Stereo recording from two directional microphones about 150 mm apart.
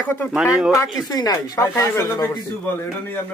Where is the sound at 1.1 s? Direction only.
25° left (ahead or behind).